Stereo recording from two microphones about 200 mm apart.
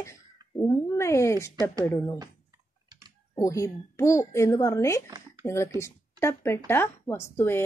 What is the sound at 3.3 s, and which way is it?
A woman's voice, 15° left (ahead or behind).